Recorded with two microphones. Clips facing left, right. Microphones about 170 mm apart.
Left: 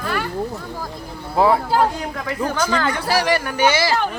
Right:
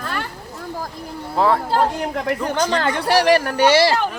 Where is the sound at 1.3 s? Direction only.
10° left (ahead or behind).